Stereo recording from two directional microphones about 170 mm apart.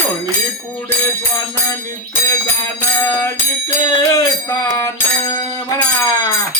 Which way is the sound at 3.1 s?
20° left (ahead or behind).